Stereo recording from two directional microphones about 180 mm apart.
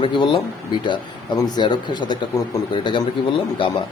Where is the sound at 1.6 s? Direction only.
25° left (ahead or behind).